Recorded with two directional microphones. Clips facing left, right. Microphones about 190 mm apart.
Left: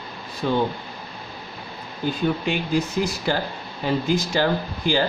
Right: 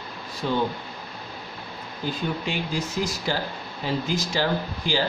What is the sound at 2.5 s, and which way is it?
Speech, 55° left (ahead or behind).